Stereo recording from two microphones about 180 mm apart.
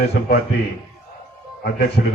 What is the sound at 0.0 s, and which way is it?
Speech, 60° left (ahead or behind).